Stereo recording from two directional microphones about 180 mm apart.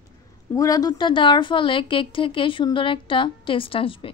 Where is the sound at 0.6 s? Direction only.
20° left (ahead or behind).